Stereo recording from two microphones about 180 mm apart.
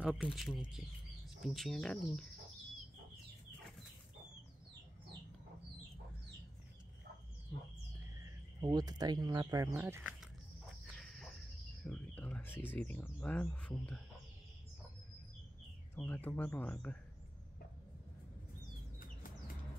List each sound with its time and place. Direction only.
0.0 s speech: 5° right (ahead or behind)
8.2 s speech: 25° right (ahead or behind)
11.0 s cricket: centre (ahead or behind)
11.8 s speech: 5° left (ahead or behind)
15.9 s speech: 10° left (ahead or behind)